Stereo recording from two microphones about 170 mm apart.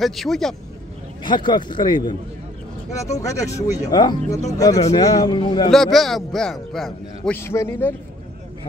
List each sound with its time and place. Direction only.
0.0 s a man's voice: centre (ahead or behind)
1.2 s speech: 25° left (ahead or behind)
3.2 s speech: 20° left (ahead or behind)
5.7 s a man's voice: centre (ahead or behind)
7.3 s a man's voice: 15° left (ahead or behind)